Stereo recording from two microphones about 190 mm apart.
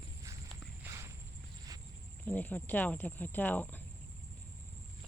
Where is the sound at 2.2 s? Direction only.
10° left (ahead or behind).